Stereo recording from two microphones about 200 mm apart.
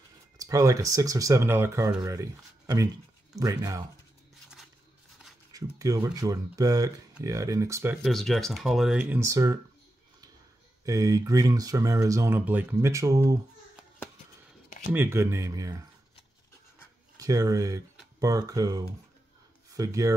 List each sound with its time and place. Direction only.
0.4 s speech: 15° right (ahead or behind)
5.8 s speech: 20° right (ahead or behind)
8.0 s speech: centre (ahead or behind); by 9.6 s 15° right (ahead or behind)
10.9 s speech: 15° right (ahead or behind)
14.9 s speech: 10° right (ahead or behind)
17.2 s speech: 15° right (ahead or behind)